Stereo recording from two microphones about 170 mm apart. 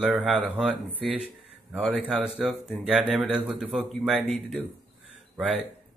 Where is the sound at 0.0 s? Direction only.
Centre (ahead or behind).